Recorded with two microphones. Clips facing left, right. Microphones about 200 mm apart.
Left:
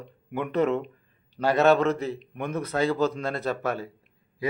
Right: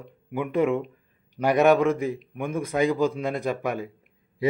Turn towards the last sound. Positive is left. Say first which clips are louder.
# right 1 dB
turn(degrees=-15)  # may be behind; listen again after turning